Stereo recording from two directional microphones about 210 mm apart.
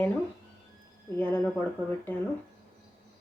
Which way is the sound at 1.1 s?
10° left (ahead or behind).